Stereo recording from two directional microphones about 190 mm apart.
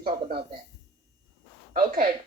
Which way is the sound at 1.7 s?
45° right (ahead or behind).